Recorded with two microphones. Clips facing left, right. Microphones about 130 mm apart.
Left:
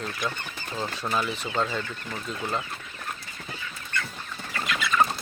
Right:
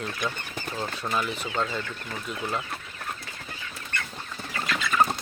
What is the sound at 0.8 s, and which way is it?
Speech, centre (ahead or behind).